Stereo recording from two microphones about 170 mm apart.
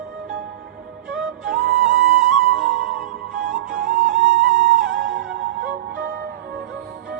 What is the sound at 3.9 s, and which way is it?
Music, 90° right.